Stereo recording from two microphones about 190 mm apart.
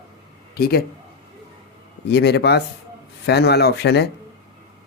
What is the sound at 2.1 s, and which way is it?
Speech, 60° left (ahead or behind).